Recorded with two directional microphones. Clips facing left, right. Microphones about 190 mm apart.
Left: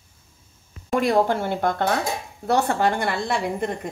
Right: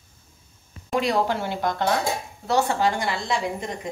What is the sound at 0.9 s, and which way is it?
A woman's voice, 50° left (ahead or behind).